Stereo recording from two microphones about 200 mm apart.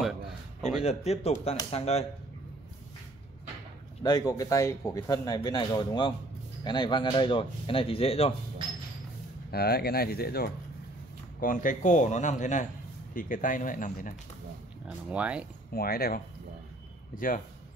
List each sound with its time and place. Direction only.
0.0 s a sound: centre (ahead or behind)
0.8 s a man's voice: 30° left (ahead or behind)
4.0 s speech: 20° left (ahead or behind)
9.5 s a man's voice: 50° left (ahead or behind)
14.9 s speech: 5° right (ahead or behind)
15.7 s speech: 50° left (ahead or behind)